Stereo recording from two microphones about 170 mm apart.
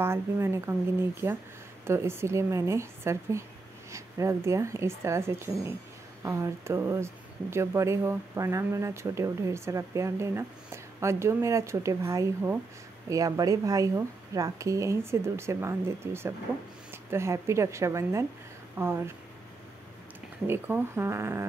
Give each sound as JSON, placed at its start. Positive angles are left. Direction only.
{"t": 0.0, "sound": "speech", "side_deg": -15}
{"t": 20.4, "sound": "speech", "side_deg": -15}